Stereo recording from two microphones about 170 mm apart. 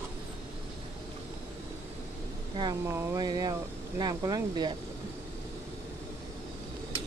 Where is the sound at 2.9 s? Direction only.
25° right (ahead or behind).